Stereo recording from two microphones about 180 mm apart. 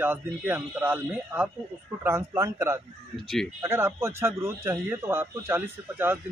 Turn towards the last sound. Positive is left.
turn(degrees=-10)  # may be behind; listen again after turning